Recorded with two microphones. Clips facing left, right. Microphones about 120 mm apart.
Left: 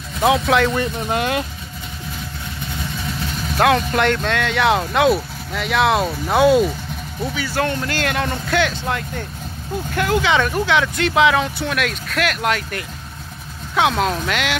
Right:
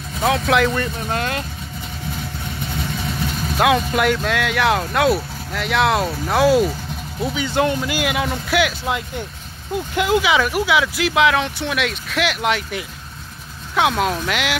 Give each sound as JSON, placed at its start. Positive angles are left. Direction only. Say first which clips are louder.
{"t": 0.5, "sound": "speech", "louder": "even", "side_deg": 0}
{"t": 0.7, "sound": "speech", "louder": "left 2 dB", "side_deg": 15}
{"t": 3.5, "sound": "speech", "louder": "left 1 dB", "side_deg": -5}
{"t": 7.2, "sound": "speech", "louder": "right 2 dB", "side_deg": -20}